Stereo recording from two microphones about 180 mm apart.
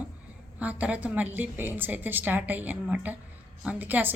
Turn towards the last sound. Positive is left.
turn(degrees=-10)  # may be behind; listen again after turning